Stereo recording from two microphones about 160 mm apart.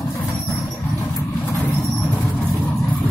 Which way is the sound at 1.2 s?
15° left (ahead or behind).